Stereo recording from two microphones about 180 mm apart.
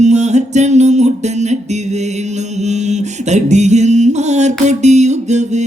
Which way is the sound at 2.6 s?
40° right (ahead or behind).